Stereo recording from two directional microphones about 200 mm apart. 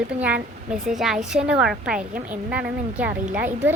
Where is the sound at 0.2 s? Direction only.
5° right (ahead or behind).